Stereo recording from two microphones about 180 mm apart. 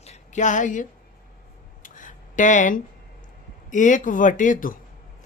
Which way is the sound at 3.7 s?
45° left (ahead or behind).